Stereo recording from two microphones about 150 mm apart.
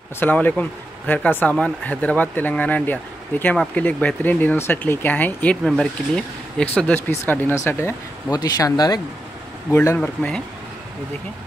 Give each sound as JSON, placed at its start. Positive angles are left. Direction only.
{"t": 0.2, "sound": "speech", "side_deg": 10}
{"t": 9.7, "sound": "speech", "side_deg": 15}